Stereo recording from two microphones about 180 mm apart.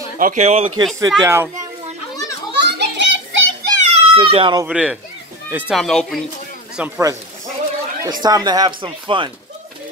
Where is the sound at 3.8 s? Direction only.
35° right (ahead or behind).